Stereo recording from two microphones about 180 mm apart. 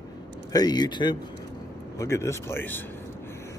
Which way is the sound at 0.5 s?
20° left (ahead or behind).